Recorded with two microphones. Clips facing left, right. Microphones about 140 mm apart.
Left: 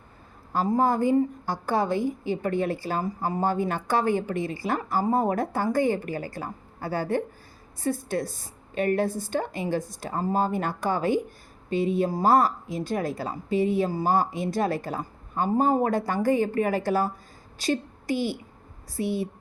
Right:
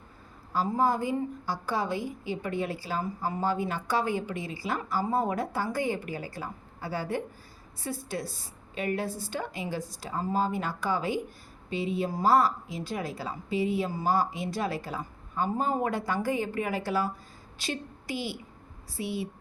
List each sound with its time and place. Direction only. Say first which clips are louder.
0.5 s a woman's voice: left 3 dB; 50° left (ahead or behind)